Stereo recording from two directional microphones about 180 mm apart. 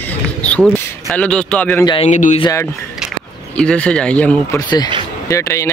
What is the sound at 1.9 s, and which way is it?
Speech, 35° left (ahead or behind).